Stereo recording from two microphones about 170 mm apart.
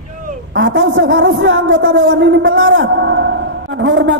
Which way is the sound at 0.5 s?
90° right.